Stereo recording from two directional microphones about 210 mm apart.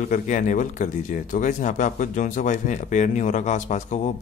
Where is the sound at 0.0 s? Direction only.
35° left (ahead or behind).